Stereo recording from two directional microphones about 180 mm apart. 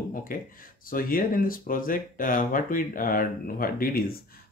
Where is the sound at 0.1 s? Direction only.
50° left (ahead or behind).